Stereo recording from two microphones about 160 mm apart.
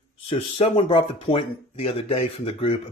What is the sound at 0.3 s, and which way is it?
Speech, 35° left (ahead or behind).